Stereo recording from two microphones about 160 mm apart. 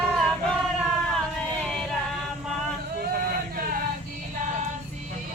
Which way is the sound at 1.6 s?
5° left (ahead or behind).